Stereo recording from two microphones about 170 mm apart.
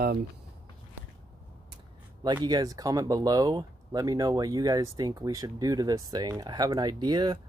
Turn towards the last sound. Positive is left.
turn(degrees=-25)  # may be behind; listen again after turning